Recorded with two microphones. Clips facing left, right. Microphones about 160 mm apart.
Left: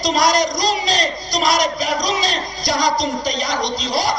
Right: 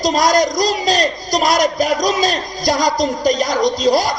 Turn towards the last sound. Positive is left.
turn(degrees=-45)  # may be behind; listen again after turning